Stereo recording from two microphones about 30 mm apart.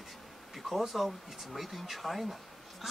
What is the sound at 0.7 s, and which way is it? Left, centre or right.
Speech, centre.